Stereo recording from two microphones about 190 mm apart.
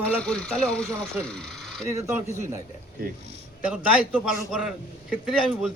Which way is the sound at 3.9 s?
5° right (ahead or behind).